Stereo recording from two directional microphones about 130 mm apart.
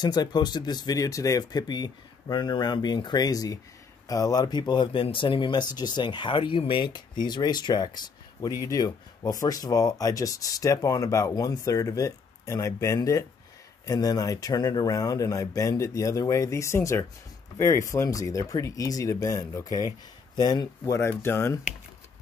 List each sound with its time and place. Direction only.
0.0 s speech: 35° left (ahead or behind)